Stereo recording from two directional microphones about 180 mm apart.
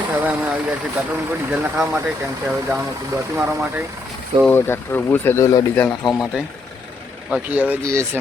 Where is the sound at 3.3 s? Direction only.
15° right (ahead or behind).